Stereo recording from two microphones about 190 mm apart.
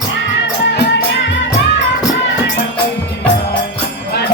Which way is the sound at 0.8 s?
70° left (ahead or behind).